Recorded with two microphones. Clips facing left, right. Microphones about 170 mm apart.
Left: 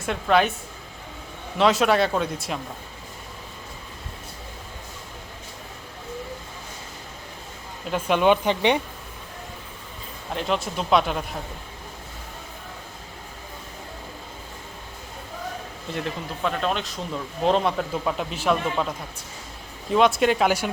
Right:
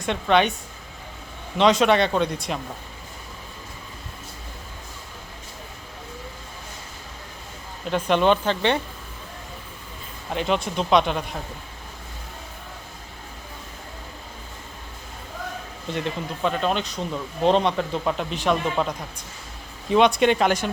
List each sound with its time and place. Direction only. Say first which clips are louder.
0.0 s speech: right 1 dB; centre (ahead or behind)
1.5 s speech: right 1 dB; centre (ahead or behind)
7.9 s speech: even; 5° left (ahead or behind)
10.3 s speech: right 2 dB; centre (ahead or behind)
15.9 s speech: right 2 dB; centre (ahead or behind)